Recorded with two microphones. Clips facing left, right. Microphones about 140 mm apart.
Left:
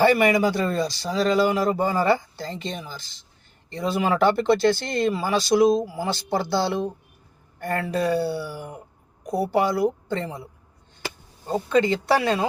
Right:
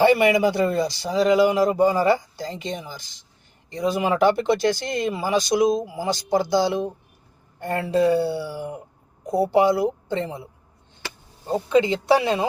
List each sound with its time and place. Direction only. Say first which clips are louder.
0.0 s a man's voice: right 1 dB; 20° right (ahead or behind)
11.4 s speech: right 1 dB; 15° right (ahead or behind)